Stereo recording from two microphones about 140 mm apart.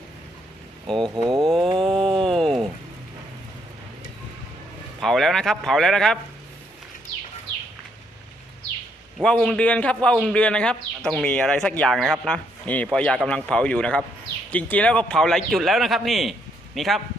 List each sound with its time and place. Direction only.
1.0 s speech: 30° right (ahead or behind)
1.5 s a sound: centre (ahead or behind)
1.7 s a sound: 40° right (ahead or behind)
2.2 s rain: 5° left (ahead or behind)
4.9 s a man's voice: centre (ahead or behind)
9.2 s a man's voice: 5° left (ahead or behind)